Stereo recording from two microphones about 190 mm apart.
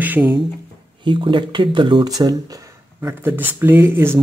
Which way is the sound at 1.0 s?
25° right (ahead or behind).